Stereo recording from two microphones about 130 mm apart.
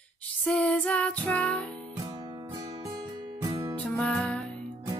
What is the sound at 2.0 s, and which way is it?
Music, 35° right (ahead or behind).